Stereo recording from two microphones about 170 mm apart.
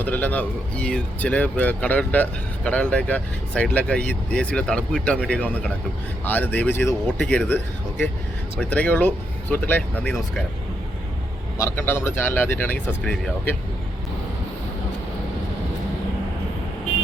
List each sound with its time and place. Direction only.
0.0 s speech: 10° left (ahead or behind)
11.6 s speech: 15° left (ahead or behind)